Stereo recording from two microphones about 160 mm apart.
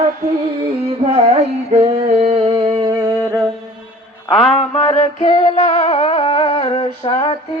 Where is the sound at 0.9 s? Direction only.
40° right (ahead or behind); by 3.3 s 20° right (ahead or behind).